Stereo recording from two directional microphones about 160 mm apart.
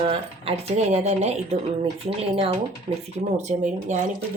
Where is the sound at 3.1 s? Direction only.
50° right (ahead or behind).